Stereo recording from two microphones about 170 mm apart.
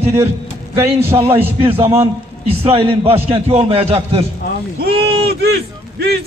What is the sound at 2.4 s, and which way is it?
A man's voice, 35° right (ahead or behind).